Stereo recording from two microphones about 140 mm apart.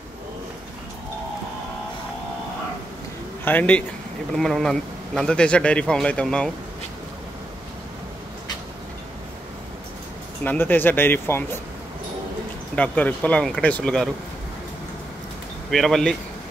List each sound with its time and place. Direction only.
3.4 s speech: 10° left (ahead or behind)
10.4 s speech: 15° left (ahead or behind)
12.7 s speech: 10° left (ahead or behind)
15.7 s speech: centre (ahead or behind)